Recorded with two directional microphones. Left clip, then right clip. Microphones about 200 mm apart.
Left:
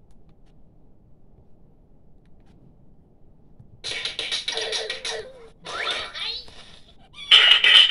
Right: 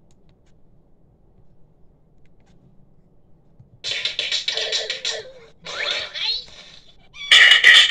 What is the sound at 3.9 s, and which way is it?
Music, 25° left (ahead or behind).